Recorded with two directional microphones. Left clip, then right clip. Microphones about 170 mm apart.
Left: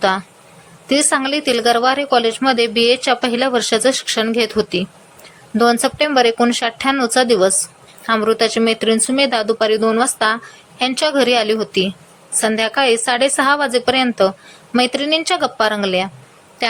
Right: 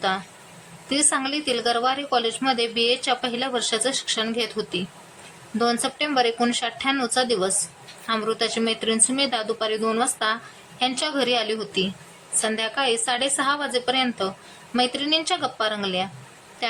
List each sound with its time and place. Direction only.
0.9 s a woman's voice: 25° left (ahead or behind)